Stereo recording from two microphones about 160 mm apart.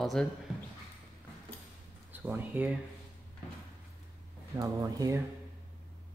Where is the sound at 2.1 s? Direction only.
10° right (ahead or behind).